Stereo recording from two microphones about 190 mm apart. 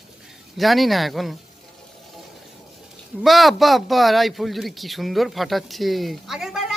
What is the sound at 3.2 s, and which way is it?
Speech, centre (ahead or behind).